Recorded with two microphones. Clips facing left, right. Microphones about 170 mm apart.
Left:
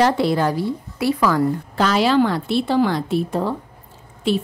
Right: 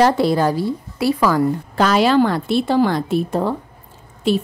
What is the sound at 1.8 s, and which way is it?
A woman's voice, 50° right (ahead or behind).